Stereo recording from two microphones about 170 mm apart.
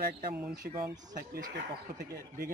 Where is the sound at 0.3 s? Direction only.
5° right (ahead or behind).